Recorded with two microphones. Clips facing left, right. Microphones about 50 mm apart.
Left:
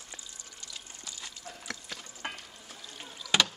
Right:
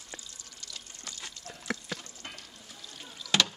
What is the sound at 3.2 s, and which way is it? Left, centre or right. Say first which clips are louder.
Rowboat: even; centre.